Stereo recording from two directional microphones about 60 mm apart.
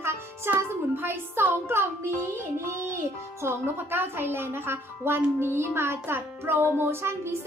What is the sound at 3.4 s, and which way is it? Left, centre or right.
Speech, right.